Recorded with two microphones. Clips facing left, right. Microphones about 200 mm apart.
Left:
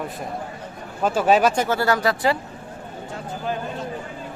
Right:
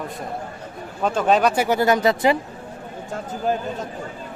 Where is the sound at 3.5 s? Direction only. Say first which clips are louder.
Right 5 dB; 45° right (ahead or behind).